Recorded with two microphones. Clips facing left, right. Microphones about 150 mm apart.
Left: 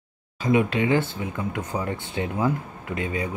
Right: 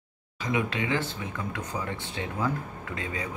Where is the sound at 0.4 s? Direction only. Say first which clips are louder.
Left 7 dB; 25° left (ahead or behind).